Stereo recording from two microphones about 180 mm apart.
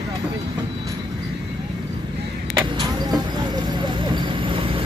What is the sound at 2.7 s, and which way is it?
Vehicle, 25° right (ahead or behind).